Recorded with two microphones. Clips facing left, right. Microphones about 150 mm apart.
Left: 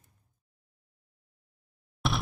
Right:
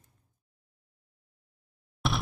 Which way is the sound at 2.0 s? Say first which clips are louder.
Even; centre (ahead or behind).